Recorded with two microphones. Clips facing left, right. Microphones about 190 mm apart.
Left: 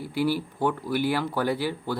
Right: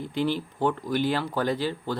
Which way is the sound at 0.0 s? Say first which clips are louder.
Left 1 dB; 10° left (ahead or behind).